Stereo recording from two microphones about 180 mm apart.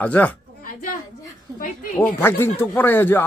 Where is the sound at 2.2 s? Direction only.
10° left (ahead or behind).